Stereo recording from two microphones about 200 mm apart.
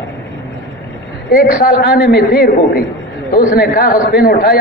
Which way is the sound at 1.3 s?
50° left (ahead or behind).